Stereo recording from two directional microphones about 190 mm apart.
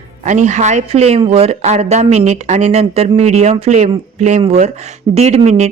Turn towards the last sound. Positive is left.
turn(degrees=-35)  # may be behind; listen again after turning